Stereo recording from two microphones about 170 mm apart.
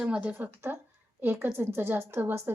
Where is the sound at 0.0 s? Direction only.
5° right (ahead or behind).